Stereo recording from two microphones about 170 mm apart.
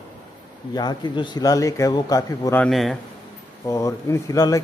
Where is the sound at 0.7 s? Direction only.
25° left (ahead or behind).